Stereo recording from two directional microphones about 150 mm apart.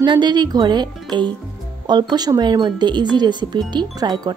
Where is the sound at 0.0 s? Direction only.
30° right (ahead or behind).